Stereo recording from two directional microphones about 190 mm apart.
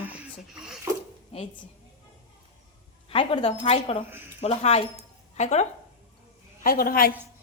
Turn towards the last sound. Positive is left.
turn(degrees=50)  # may be behind; listen again after turning